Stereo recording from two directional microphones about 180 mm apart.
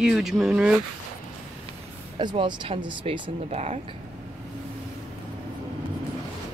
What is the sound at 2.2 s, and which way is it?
Speech, 25° right (ahead or behind).